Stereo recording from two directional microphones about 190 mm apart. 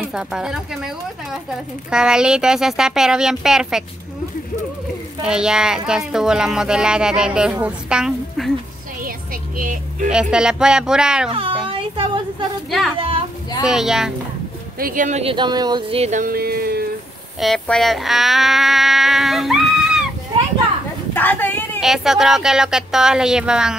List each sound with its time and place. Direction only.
0.1 s speech: 5° right (ahead or behind)
5.2 s speech: 5° right (ahead or behind)
9.0 s a sound: 45° right (ahead or behind)
10.3 s speech: 5° right (ahead or behind)
11.3 s a sound: 25° right (ahead or behind)
12.9 s a child's voice: 30° right (ahead or behind)
13.7 s speech: centre (ahead or behind)
14.8 s speech: 45° right (ahead or behind)
15.3 s speech: 20° right (ahead or behind)
16.0 s speech: 40° right (ahead or behind)
17.4 s insect: centre (ahead or behind)
21.1 s a sound: 10° left (ahead or behind)
21.7 s speech: centre (ahead or behind)